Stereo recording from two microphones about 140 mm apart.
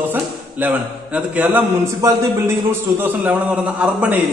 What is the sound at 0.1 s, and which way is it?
A man's voice, 10° right (ahead or behind).